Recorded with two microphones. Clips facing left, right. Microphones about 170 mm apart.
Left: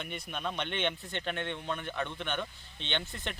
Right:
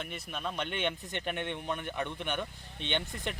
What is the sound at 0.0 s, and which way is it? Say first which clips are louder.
Speech: left 1 dB; centre (ahead or behind).